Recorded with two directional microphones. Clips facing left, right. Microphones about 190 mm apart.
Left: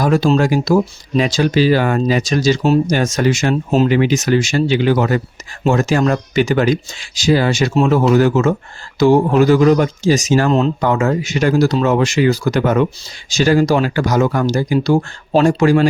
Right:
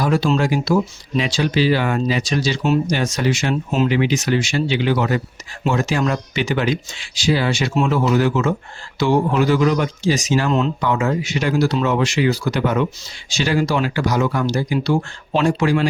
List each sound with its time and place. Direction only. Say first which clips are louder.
0.0 s speech: left 4 dB; 45° left (ahead or behind)